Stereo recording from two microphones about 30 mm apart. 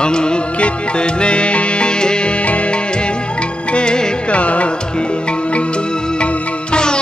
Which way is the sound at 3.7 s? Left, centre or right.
Left.